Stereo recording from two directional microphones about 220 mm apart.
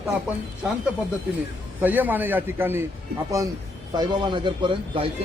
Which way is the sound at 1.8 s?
10° right (ahead or behind).